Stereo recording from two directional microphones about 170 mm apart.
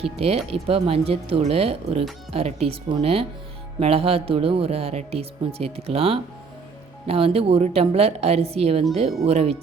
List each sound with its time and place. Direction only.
0.0 s speech: 35° right (ahead or behind)